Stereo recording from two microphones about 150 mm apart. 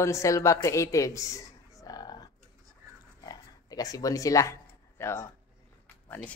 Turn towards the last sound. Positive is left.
turn(degrees=10)  # may be behind; listen again after turning